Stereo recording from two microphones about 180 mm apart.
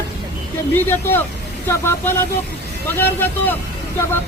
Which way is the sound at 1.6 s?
15° left (ahead or behind).